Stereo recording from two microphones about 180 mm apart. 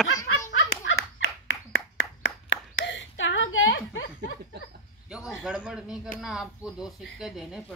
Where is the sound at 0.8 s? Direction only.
90° left.